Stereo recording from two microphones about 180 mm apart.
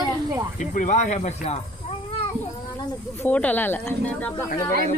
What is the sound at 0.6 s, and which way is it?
Speech, 45° left (ahead or behind).